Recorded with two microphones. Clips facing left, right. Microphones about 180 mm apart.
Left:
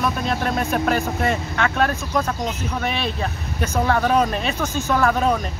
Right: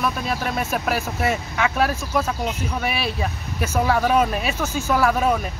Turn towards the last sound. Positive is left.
turn(degrees=-5)  # may be behind; listen again after turning